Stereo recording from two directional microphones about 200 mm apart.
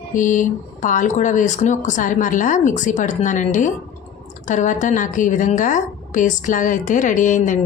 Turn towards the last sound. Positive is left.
turn(degrees=40)  # may be behind; listen again after turning